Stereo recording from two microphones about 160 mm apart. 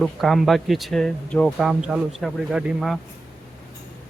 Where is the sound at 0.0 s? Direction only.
Centre (ahead or behind).